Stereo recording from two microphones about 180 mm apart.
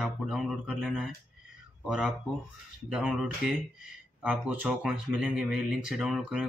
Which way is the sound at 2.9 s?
5° right (ahead or behind).